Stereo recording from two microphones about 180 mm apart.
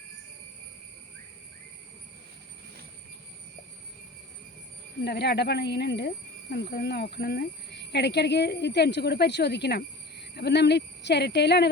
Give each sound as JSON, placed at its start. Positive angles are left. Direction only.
{"t": 5.0, "sound": "speech", "side_deg": 65}